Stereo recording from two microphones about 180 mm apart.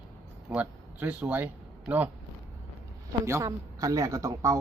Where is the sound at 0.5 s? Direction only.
10° right (ahead or behind).